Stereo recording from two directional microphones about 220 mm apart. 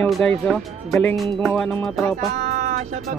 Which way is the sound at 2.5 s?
35° right (ahead or behind).